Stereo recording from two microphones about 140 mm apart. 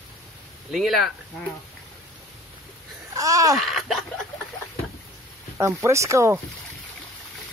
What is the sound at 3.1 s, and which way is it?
Speech, 25° right (ahead or behind).